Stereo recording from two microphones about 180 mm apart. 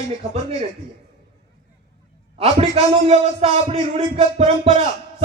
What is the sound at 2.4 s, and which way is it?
A man's voice, 35° right (ahead or behind).